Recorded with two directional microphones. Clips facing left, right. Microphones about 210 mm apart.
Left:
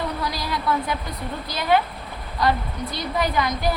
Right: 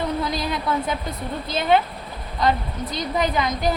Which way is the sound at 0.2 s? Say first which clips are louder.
Right 3 dB; 20° right (ahead or behind).